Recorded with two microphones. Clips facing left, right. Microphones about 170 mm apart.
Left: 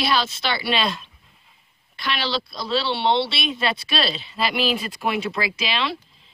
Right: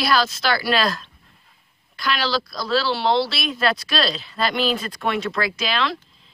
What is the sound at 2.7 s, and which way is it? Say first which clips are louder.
Speech: right 1 dB; centre (ahead or behind).